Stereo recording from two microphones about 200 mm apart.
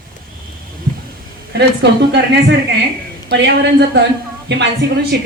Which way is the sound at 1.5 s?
60° right (ahead or behind).